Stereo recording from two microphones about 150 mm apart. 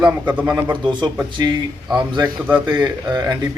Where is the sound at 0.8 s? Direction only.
30° right (ahead or behind).